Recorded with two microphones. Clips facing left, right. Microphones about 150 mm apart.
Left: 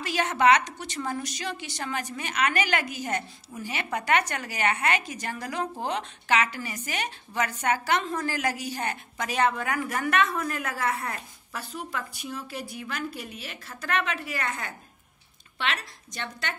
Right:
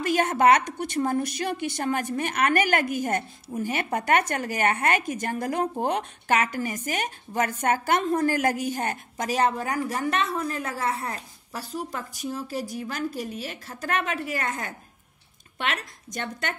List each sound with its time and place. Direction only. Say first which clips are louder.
0.0 s a woman's voice: right 3 dB; 50° right (ahead or behind)